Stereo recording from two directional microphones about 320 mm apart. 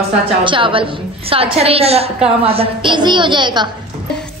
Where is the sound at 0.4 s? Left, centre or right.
Centre.